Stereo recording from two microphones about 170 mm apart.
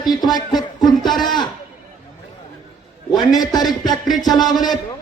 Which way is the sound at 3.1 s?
25° left (ahead or behind).